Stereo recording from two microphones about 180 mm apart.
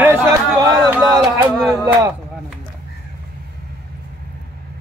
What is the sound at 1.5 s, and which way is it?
Speech, centre (ahead or behind).